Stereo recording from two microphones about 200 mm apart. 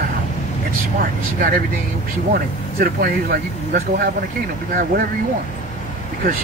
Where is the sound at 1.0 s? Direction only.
45° right (ahead or behind).